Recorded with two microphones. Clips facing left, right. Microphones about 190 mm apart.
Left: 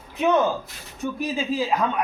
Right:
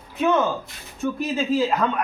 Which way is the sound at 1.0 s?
15° left (ahead or behind).